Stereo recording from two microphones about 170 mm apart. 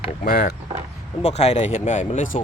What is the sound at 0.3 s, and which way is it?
Speech, 75° left (ahead or behind).